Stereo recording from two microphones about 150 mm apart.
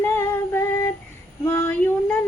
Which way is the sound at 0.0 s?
15° left (ahead or behind).